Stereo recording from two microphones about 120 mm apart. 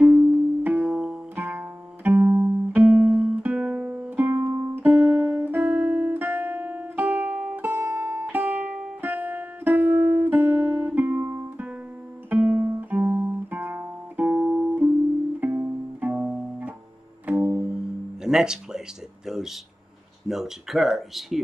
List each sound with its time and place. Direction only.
0.0 s music: 15° right (ahead or behind)
12.3 s guitar: 15° right (ahead or behind)
14.3 s music: 5° right (ahead or behind)
15.4 s music: 15° right (ahead or behind)
19.2 s a sound: 5° right (ahead or behind)
20.2 s speech: 5° right (ahead or behind)